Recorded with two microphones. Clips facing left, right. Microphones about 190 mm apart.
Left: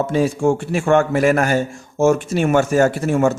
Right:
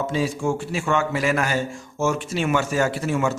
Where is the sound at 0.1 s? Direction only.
50° left (ahead or behind).